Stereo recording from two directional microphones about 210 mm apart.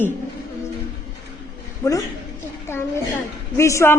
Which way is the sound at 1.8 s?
15° left (ahead or behind).